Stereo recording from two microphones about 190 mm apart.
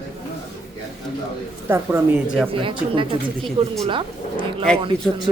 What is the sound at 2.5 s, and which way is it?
A woman's voice, 25° right (ahead or behind).